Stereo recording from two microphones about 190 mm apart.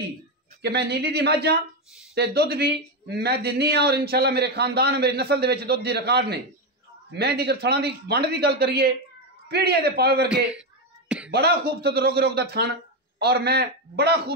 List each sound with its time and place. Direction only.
0.6 s speech: 60° right (ahead or behind)